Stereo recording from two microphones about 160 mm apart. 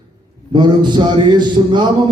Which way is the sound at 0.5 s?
30° right (ahead or behind).